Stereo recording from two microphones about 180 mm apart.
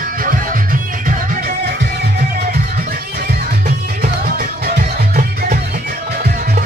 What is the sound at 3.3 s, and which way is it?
Music, 60° right (ahead or behind).